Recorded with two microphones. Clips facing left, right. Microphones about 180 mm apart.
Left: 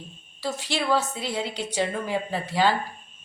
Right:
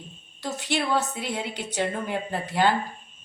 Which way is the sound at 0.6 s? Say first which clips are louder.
Even; 65° right (ahead or behind).